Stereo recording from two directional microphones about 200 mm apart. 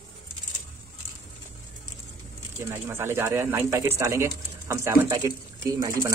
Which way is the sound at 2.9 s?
10° right (ahead or behind).